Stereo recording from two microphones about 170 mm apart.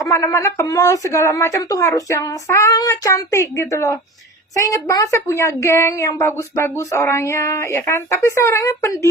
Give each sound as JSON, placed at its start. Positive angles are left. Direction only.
{"t": 0.0, "sound": "a woman's voice", "side_deg": 15}